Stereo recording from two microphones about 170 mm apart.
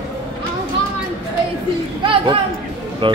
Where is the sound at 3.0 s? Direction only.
30° right (ahead or behind).